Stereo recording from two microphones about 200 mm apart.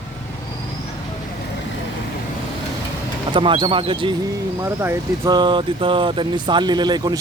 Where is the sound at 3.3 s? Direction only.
25° right (ahead or behind).